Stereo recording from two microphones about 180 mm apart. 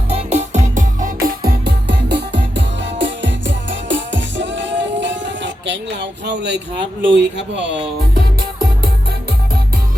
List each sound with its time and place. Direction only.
0.1 s music: 35° right (ahead or behind); by 7.8 s 75° right (ahead or behind)